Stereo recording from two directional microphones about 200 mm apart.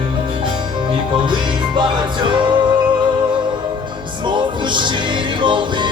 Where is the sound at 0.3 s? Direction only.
25° right (ahead or behind).